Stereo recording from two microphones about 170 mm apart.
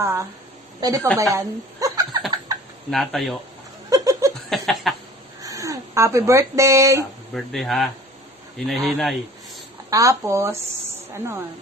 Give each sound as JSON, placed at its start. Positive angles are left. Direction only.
{"t": 0.0, "sound": "a woman's voice", "side_deg": -15}
{"t": 2.9, "sound": "speech", "side_deg": 0}
{"t": 3.9, "sound": "laughter", "side_deg": -20}
{"t": 4.5, "sound": "speech", "side_deg": 0}
{"t": 5.4, "sound": "speech", "side_deg": -20}
{"t": 7.3, "sound": "speech", "side_deg": 0}
{"t": 9.8, "sound": "speech", "side_deg": -20}